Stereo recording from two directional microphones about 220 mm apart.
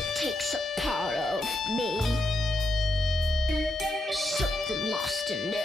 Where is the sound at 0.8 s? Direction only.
Centre (ahead or behind).